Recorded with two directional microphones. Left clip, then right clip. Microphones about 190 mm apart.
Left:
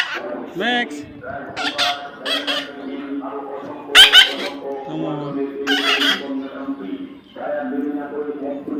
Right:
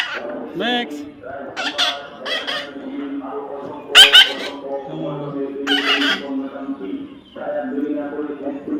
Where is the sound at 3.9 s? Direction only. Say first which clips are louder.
Right 1 dB; centre (ahead or behind).